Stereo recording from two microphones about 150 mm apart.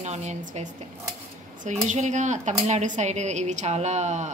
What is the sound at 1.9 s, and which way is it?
A woman's voice, 55° right (ahead or behind).